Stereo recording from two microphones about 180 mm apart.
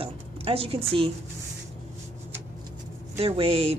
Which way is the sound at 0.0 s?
30° right (ahead or behind).